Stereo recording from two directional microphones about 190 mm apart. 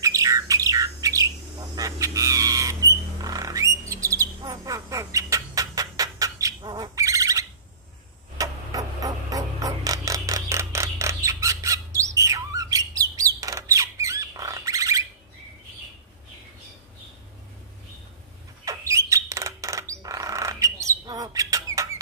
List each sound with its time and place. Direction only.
0.0 s bird: 15° right (ahead or behind)
8.4 s a sound: 20° right (ahead or behind)
18.7 s squawk: 15° right (ahead or behind)